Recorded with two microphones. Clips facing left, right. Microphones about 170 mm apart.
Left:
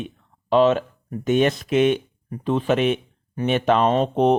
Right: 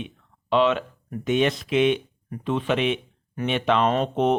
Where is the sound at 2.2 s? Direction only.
35° left (ahead or behind).